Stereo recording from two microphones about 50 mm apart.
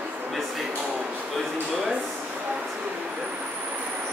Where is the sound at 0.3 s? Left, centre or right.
Centre.